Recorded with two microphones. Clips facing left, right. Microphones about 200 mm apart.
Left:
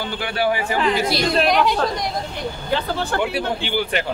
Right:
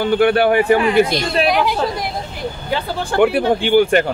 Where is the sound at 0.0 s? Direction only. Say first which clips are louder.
Right 9 dB; 60° right (ahead or behind).